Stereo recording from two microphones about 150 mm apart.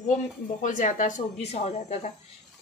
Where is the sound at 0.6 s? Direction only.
60° left (ahead or behind).